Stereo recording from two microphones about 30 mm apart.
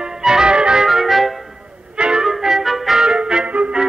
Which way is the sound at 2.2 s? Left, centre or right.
Centre.